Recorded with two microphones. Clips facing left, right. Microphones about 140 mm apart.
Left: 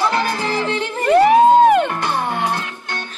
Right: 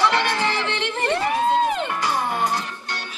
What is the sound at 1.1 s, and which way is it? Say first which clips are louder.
Music: left 12 dB; 65° left (ahead or behind).